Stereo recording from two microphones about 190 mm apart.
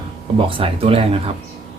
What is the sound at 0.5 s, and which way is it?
Speech, 30° right (ahead or behind).